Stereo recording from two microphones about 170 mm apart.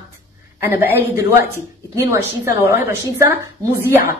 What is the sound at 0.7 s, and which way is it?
A woman's voice, 15° right (ahead or behind).